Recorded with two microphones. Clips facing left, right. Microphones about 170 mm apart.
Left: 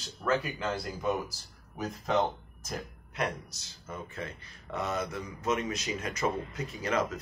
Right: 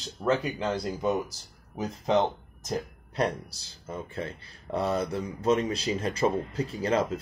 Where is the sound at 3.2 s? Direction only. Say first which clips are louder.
Right 5 dB; 30° right (ahead or behind).